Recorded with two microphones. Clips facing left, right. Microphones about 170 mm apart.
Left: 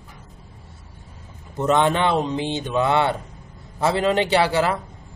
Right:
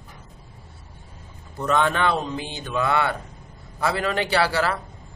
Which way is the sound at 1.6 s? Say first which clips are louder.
Left 3 dB; 20° left (ahead or behind).